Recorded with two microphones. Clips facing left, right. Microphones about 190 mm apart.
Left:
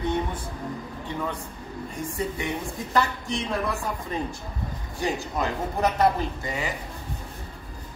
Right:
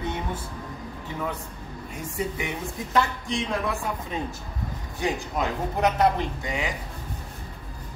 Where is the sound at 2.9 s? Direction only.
Centre (ahead or behind).